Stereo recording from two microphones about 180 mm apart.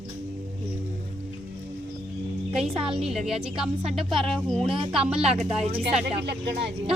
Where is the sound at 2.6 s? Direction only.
5° right (ahead or behind).